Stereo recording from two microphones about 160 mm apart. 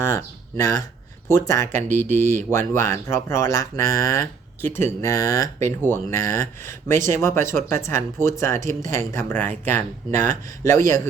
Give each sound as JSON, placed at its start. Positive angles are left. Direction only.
{"t": 0.0, "sound": "speech", "side_deg": 20}